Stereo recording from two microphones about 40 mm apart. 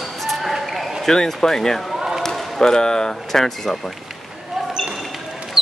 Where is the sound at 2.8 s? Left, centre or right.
Centre.